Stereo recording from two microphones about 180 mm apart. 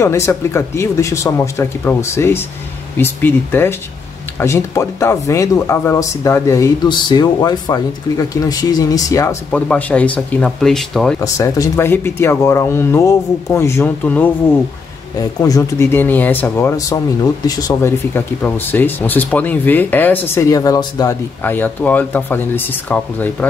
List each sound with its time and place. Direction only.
0.0 s speech: 15° left (ahead or behind)
11.1 s speech: 15° left (ahead or behind)
15.4 s speech: 20° left (ahead or behind)
21.4 s speech: 10° left (ahead or behind)